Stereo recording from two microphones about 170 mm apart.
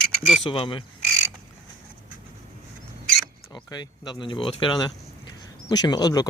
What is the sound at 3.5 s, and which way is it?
Speech, 25° left (ahead or behind).